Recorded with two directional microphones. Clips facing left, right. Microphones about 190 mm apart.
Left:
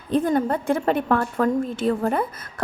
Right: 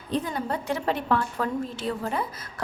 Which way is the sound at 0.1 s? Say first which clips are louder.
Left 8 dB; 50° left (ahead or behind).